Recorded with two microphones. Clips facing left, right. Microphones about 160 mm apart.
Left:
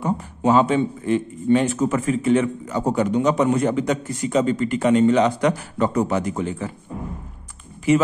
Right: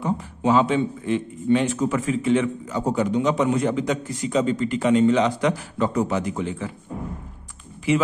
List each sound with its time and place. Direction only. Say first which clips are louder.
0.0 s a man's voice: left 2 dB; 45° left (ahead or behind)